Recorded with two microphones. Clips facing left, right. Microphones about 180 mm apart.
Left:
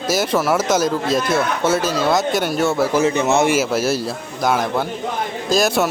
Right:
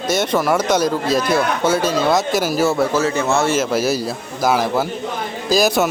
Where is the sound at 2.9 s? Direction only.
20° left (ahead or behind); by 5.8 s centre (ahead or behind).